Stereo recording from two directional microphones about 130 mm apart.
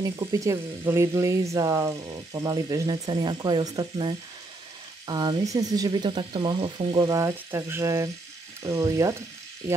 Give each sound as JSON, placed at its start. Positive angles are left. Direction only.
{"t": 0.0, "sound": "speech", "side_deg": -25}